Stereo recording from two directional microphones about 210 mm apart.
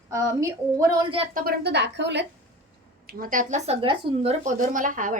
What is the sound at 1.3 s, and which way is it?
Speech, 45° right (ahead or behind).